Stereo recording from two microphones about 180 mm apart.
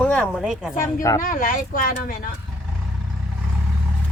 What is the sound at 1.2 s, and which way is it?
Speech, 50° left (ahead or behind).